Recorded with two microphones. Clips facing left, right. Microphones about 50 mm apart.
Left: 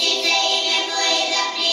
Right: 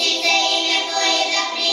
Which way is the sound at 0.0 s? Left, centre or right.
Right.